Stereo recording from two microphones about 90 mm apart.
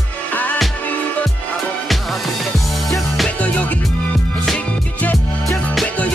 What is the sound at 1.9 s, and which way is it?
Music, centre (ahead or behind).